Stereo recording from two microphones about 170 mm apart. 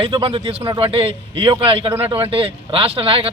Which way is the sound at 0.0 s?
35° right (ahead or behind).